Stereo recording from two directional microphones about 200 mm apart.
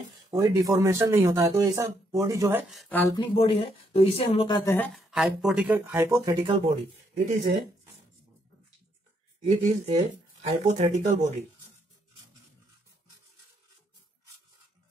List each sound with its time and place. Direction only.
0.3 s speech: 20° right (ahead or behind)
2.7 s speech: 5° left (ahead or behind)
3.2 s speech: 25° left (ahead or behind)
4.7 s speech: 5° left (ahead or behind)
5.1 s speech: 5° right (ahead or behind); by 6.7 s 25° right (ahead or behind)
7.2 s speech: 40° right (ahead or behind)
9.4 s speech: 30° right (ahead or behind)